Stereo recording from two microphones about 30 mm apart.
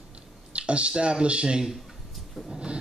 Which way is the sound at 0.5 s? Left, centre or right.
Right.